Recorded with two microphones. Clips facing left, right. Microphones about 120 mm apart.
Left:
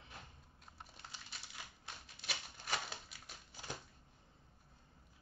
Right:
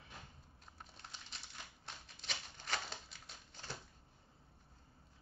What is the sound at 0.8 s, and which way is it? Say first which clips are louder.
Typing: left 1 dB; centre (ahead or behind).